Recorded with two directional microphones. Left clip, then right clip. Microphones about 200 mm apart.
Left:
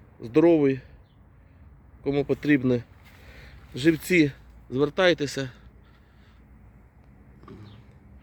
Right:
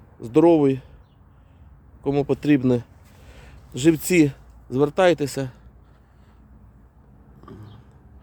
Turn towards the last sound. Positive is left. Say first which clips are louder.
# right 3 dB
turn(degrees=-20)  # may be behind; listen again after turning